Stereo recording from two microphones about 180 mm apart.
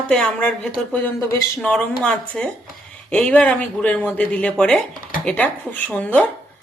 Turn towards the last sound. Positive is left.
turn(degrees=10)  # may be behind; listen again after turning